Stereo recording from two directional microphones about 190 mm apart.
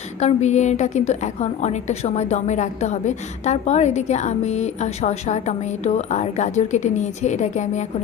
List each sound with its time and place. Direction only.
0.2 s a woman's voice: 35° left (ahead or behind)